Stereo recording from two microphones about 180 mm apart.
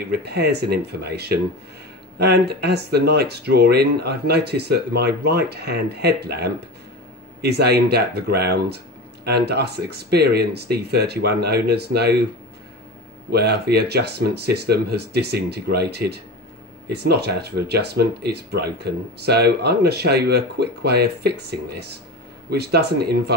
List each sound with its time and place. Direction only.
0.2 s speech: 65° right (ahead or behind)
13.3 s speech: 65° right (ahead or behind)